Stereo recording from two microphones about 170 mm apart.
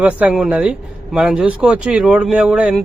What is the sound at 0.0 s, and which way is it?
Speech, 5° right (ahead or behind).